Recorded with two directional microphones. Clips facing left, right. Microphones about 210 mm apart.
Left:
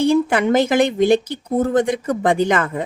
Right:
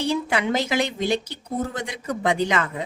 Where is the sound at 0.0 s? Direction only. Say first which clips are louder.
Left 8 dB; 50° left (ahead or behind).